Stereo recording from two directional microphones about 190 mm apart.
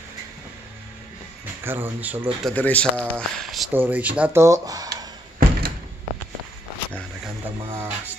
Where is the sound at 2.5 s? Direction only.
5° left (ahead or behind); by 5.1 s 20° right (ahead or behind).